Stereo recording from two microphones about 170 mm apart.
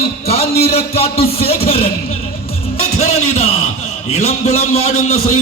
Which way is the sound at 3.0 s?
40° left (ahead or behind).